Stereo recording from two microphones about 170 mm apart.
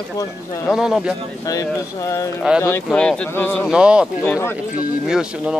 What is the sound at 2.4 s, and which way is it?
Speech, 5° right (ahead or behind).